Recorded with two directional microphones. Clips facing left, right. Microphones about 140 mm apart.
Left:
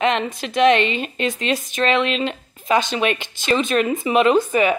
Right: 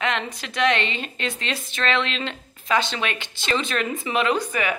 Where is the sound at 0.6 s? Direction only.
20° left (ahead or behind).